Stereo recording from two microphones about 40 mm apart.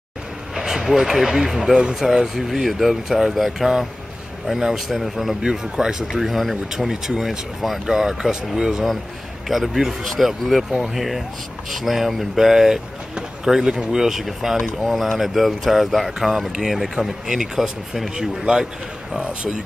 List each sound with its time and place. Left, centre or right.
0.6 s speech: centre
5.5 s speech: centre
6.1 s speech: centre
18.4 s a man's voice: right